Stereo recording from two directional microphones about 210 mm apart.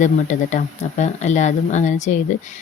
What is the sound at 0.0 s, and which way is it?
Speech, 35° left (ahead or behind).